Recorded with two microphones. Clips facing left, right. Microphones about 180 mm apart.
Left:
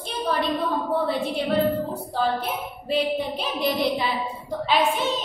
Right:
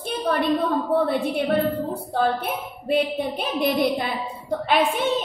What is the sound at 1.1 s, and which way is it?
A woman's voice, 55° right (ahead or behind).